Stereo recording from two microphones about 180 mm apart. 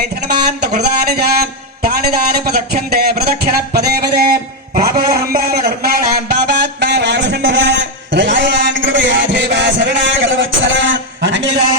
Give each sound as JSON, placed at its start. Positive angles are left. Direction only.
{"t": 0.3, "sound": "speech", "side_deg": -60}
{"t": 4.7, "sound": "a sound", "side_deg": -55}
{"t": 8.1, "sound": "music", "side_deg": -90}